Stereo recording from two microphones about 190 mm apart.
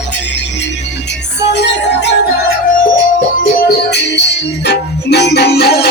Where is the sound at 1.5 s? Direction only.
65° left (ahead or behind).